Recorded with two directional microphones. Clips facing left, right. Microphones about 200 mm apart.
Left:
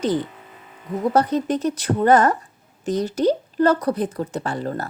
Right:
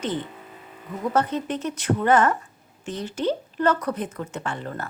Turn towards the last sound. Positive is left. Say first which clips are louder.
# left 5 dB
turn(degrees=35)  # may be behind; listen again after turning